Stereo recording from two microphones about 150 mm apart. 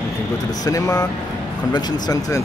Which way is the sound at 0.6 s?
25° left (ahead or behind).